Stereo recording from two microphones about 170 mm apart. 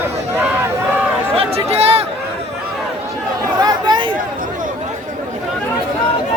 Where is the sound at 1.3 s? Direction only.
35° right (ahead or behind).